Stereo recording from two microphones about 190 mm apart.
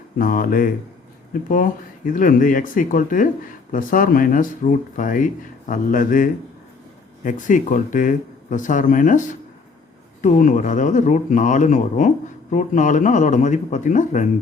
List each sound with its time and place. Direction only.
0.2 s speech: 50° left (ahead or behind)